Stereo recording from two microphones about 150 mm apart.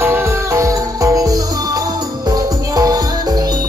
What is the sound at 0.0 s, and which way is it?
Music, 15° right (ahead or behind).